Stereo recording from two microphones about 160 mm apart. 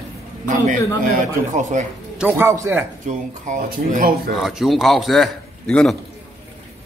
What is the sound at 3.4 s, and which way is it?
Speech, 55° right (ahead or behind).